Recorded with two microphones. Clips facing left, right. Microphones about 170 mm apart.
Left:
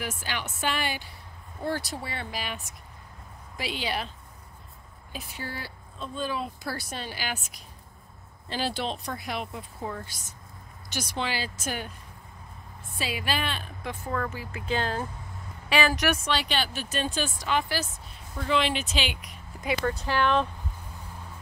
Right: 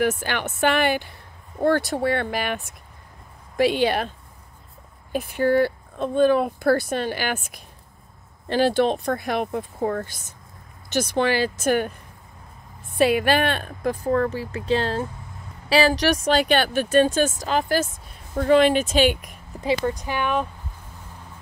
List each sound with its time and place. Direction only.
0.0 s speech: 55° right (ahead or behind)
5.1 s speech: 55° right (ahead or behind)
12.9 s speech: 60° right (ahead or behind); by 16.2 s 35° right (ahead or behind)
16.3 s speech: 50° right (ahead or behind)
19.8 s speech: 15° right (ahead or behind)